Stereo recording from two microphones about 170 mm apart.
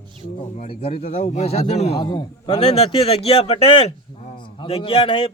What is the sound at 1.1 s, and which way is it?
Speech, 35° left (ahead or behind).